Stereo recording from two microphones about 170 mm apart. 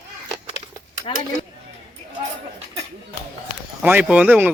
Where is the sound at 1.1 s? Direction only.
30° left (ahead or behind).